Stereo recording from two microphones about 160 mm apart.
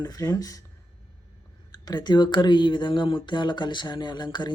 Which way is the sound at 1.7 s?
25° left (ahead or behind).